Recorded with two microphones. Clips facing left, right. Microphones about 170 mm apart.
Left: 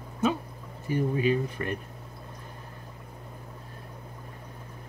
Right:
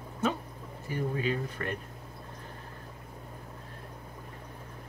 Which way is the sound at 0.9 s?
15° left (ahead or behind).